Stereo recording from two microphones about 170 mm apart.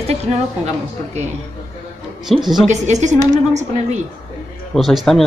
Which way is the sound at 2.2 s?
Centre (ahead or behind).